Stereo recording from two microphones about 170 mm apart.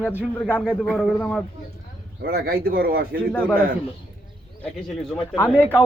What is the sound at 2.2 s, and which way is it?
Speech, 65° right (ahead or behind).